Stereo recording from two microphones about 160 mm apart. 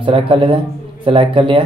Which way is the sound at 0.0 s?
35° right (ahead or behind).